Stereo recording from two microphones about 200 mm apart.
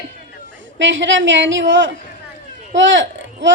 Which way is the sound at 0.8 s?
65° right (ahead or behind).